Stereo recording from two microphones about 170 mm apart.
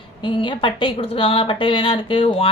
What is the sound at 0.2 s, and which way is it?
Speech, 30° left (ahead or behind).